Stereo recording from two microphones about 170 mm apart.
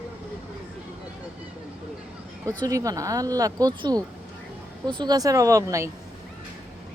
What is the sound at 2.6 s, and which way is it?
Speech, 20° right (ahead or behind).